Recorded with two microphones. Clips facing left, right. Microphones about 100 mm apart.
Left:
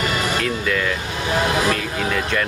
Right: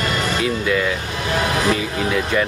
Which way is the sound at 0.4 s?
5° right (ahead or behind).